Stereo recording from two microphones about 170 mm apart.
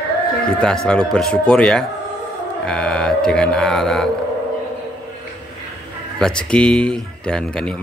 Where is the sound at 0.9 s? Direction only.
5° left (ahead or behind).